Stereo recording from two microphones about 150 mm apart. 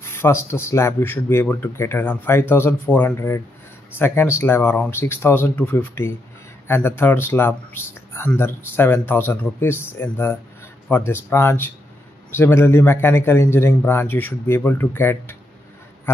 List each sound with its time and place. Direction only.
0.0 s speech: 15° left (ahead or behind)